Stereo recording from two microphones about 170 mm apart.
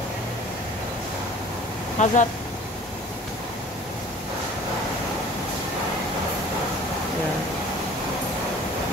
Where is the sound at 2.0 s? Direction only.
45° left (ahead or behind).